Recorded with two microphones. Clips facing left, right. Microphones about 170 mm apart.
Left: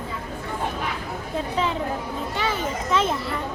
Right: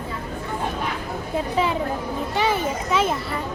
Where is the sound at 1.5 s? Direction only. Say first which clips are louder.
Right 2 dB; 10° right (ahead or behind).